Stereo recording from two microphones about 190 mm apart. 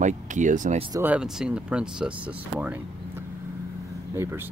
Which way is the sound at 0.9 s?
10° right (ahead or behind).